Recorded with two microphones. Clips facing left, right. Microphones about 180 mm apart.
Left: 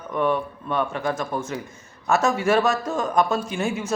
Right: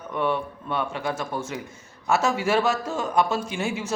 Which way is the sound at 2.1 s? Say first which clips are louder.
Left 2 dB; 10° right (ahead or behind).